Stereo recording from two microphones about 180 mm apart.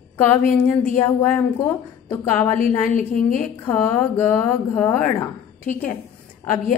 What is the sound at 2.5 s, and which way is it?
Speech, 50° left (ahead or behind).